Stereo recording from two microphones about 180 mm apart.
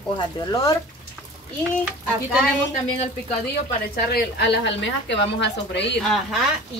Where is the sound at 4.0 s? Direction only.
60° left (ahead or behind).